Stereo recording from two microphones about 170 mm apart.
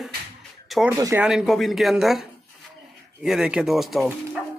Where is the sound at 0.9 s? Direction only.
20° right (ahead or behind).